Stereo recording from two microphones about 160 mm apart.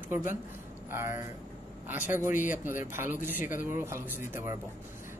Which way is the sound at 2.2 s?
50° left (ahead or behind).